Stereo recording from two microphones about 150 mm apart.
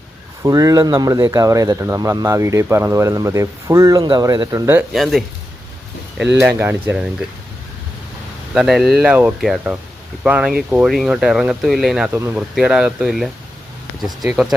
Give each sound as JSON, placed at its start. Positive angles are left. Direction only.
{"t": 0.4, "sound": "speech", "side_deg": -25}
{"t": 4.9, "sound": "speech", "side_deg": 0}
{"t": 8.5, "sound": "speech", "side_deg": -5}